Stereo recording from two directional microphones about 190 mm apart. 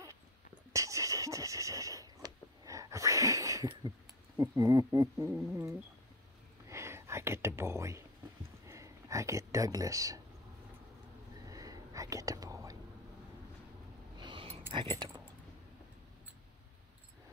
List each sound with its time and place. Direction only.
0.7 s a sound: 15° right (ahead or behind)
4.4 s speech: 15° right (ahead or behind)
6.7 s whispering: 15° right (ahead or behind)
8.6 s speech: 15° right (ahead or behind)
11.4 s whispering: 20° right (ahead or behind)
14.2 s a sound: 25° right (ahead or behind)
14.7 s keys jangling: 25° right (ahead or behind)